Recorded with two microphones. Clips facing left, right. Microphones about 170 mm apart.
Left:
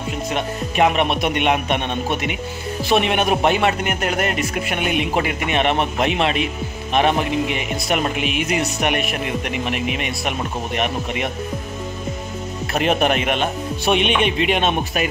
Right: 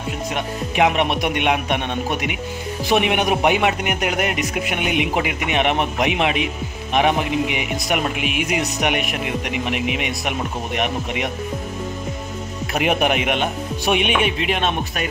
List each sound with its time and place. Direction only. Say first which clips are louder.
0.3 s speech: left 1 dB; 15° right (ahead or behind)
12.7 s speech: left 1 dB; 10° right (ahead or behind)